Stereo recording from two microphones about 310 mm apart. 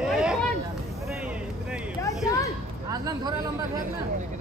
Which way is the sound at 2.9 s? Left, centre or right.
Centre.